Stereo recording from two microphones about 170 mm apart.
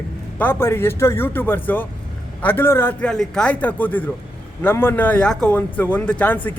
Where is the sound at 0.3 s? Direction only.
15° left (ahead or behind).